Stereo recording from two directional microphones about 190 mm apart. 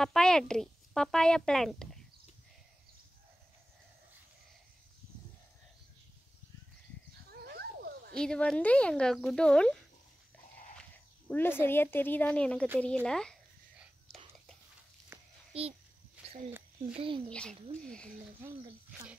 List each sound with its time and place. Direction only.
0.0 s a woman's voice: 5° left (ahead or behind)
7.2 s dog: 55° right (ahead or behind)
8.2 s a woman's voice: 5° left (ahead or behind)
10.8 s speech: 10° left (ahead or behind)
13.0 s whispering: 5° left (ahead or behind)
15.1 s a sound: 10° right (ahead or behind)
15.5 s a child's voice: 30° right (ahead or behind)
16.2 s a sound: 5° right (ahead or behind)
16.9 s speech: 30° right (ahead or behind)
17.3 s a woman's voice: 5° left (ahead or behind)
18.4 s a woman's voice: 5° right (ahead or behind)